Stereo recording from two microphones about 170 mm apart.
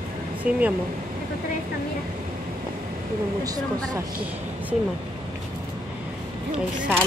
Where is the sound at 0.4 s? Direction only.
10° right (ahead or behind).